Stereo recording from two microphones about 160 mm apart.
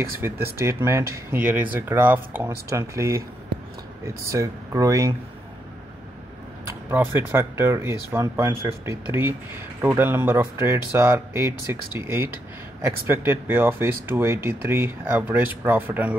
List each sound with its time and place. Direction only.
0.2 s speech: 15° right (ahead or behind)
6.7 s speech: 15° right (ahead or behind)